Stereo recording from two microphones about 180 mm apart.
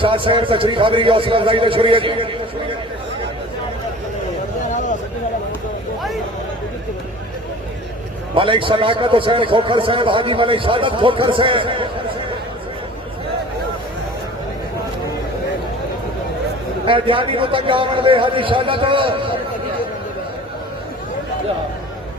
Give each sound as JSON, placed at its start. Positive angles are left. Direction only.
{"t": 0.0, "sound": "a man's voice", "side_deg": -30}
{"t": 4.7, "sound": "a sound", "side_deg": 45}
{"t": 8.4, "sound": "a man's voice", "side_deg": -30}
{"t": 16.8, "sound": "a man's voice", "side_deg": -30}